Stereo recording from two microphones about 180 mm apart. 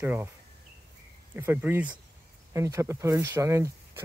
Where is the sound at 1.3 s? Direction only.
10° right (ahead or behind).